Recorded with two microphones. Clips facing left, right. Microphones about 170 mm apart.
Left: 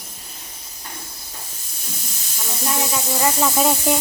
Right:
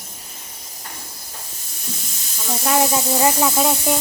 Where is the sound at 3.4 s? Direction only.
Centre (ahead or behind).